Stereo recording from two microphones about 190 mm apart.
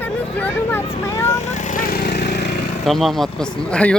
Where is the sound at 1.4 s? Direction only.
40° left (ahead or behind); by 2.5 s 60° left (ahead or behind).